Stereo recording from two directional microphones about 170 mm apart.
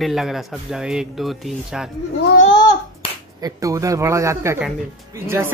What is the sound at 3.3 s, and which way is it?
Speech, 20° right (ahead or behind).